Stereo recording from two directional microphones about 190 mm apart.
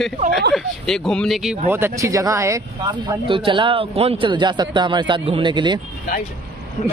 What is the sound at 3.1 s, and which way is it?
A man's voice, 25° right (ahead or behind).